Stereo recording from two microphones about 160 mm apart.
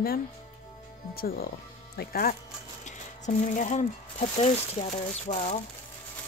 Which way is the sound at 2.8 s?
50° left (ahead or behind).